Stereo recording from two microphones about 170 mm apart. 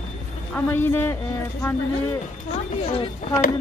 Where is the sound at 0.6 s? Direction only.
10° left (ahead or behind).